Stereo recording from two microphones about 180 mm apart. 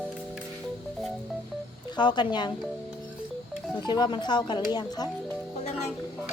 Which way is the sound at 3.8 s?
25° left (ahead or behind).